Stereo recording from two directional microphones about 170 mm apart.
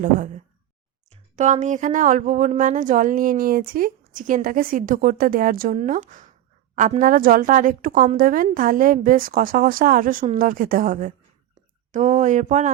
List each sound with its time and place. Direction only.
1.4 s speech: 45° right (ahead or behind)
5.7 s a woman's voice: 45° right (ahead or behind)